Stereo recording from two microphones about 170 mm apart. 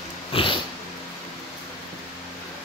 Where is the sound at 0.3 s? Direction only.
30° left (ahead or behind).